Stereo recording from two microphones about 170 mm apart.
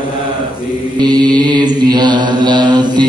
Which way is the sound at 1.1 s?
25° right (ahead or behind).